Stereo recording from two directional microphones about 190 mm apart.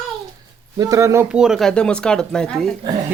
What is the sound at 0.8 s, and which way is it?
Speech, 15° right (ahead or behind).